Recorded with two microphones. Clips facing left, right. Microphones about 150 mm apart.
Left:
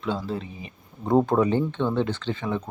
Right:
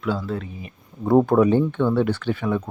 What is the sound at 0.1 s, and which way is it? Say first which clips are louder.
Speech: right 2 dB; 5° right (ahead or behind).